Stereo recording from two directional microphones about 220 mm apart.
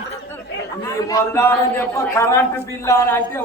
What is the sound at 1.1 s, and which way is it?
A man's voice, 15° left (ahead or behind).